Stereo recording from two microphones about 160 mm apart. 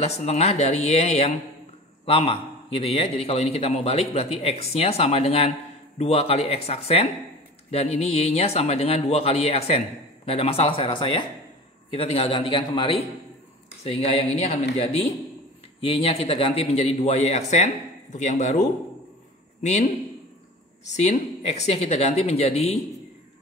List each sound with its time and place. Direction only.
0.0 s speech: 40° left (ahead or behind)
20.9 s speech: 45° left (ahead or behind)